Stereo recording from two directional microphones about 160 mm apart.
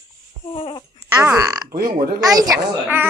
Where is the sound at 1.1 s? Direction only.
15° right (ahead or behind).